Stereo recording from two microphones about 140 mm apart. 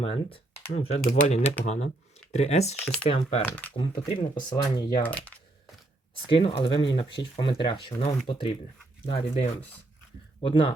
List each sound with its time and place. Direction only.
0.0 s speech: 45° left (ahead or behind)
3.4 s speech: 15° left (ahead or behind)
4.1 s speech: 35° left (ahead or behind)
5.0 s speech: 10° left (ahead or behind)
6.2 s speech: 40° left (ahead or behind)